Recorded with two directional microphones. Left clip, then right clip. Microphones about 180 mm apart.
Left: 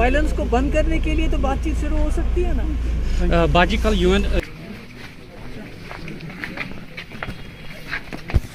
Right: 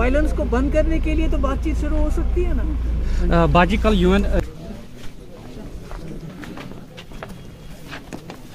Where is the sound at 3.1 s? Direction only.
50° right (ahead or behind).